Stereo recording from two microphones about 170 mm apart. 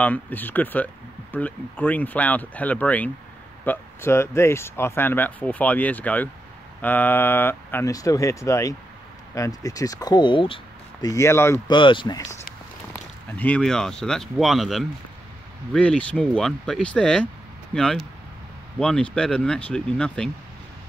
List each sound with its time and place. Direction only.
0.0 s speech: 10° left (ahead or behind)
11.6 s speech: 30° left (ahead or behind)
12.9 s speech: 10° left (ahead or behind)